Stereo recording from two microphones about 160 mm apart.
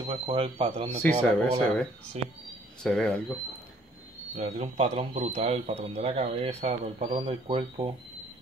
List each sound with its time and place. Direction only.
0.0 s speech: 30° right (ahead or behind)
1.0 s speech: 5° left (ahead or behind)
4.4 s speech: 45° right (ahead or behind)